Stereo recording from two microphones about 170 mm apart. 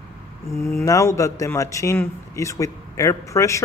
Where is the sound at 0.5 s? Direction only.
15° left (ahead or behind).